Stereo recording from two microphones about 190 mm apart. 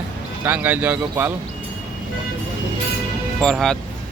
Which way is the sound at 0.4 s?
10° right (ahead or behind).